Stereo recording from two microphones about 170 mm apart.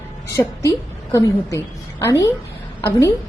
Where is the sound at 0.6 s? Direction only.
20° left (ahead or behind).